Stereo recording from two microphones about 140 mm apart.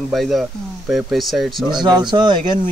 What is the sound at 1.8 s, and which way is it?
Speech, 30° right (ahead or behind).